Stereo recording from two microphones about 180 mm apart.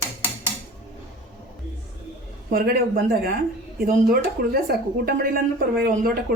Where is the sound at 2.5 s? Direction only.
55° right (ahead or behind).